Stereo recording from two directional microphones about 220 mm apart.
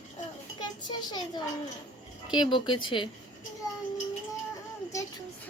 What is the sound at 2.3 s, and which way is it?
Speech, 20° left (ahead or behind).